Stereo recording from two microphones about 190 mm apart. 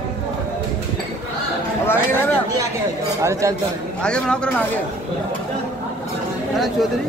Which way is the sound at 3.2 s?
15° right (ahead or behind).